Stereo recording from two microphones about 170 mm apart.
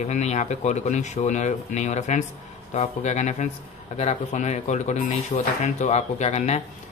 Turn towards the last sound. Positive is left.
turn(degrees=40)  # may be behind; listen again after turning